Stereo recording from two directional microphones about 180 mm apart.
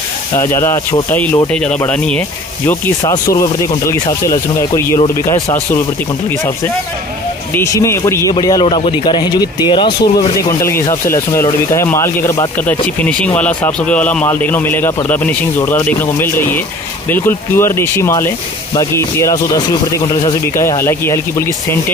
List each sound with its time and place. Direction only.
0.4 s speech: 15° left (ahead or behind)
7.5 s speech: 15° left (ahead or behind)
10.6 s speech: 15° left (ahead or behind)